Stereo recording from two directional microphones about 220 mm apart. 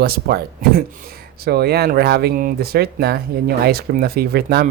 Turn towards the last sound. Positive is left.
turn(degrees=-45)  # may be behind; listen again after turning